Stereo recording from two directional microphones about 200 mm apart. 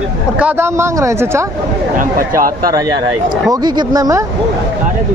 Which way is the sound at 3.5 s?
20° right (ahead or behind).